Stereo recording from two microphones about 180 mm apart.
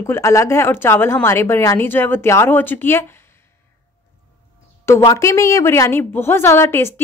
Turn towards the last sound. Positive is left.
turn(degrees=15)  # may be behind; listen again after turning